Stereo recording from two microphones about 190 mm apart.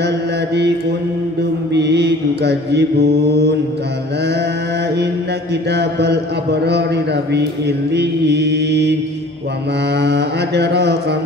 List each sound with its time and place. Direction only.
1.4 s mantra: 60° right (ahead or behind)
4.9 s mantra: 60° right (ahead or behind)
9.9 s mantra: 60° right (ahead or behind)